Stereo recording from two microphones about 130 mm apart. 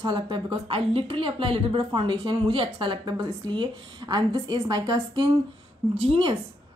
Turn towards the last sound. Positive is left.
turn(degrees=-45)  # may be behind; listen again after turning